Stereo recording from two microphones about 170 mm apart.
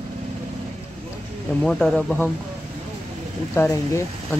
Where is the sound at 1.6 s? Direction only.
5° left (ahead or behind).